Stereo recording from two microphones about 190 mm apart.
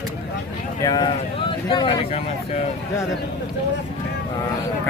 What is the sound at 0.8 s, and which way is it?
Speech, 20° left (ahead or behind).